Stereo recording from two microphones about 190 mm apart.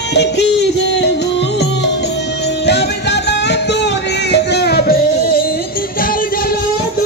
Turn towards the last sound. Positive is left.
turn(degrees=55)  # may be behind; listen again after turning